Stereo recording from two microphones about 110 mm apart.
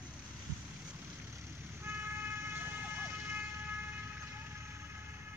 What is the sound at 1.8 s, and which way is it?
Vehicle, 20° right (ahead or behind).